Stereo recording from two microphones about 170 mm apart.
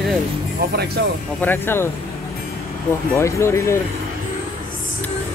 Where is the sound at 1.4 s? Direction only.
10° left (ahead or behind).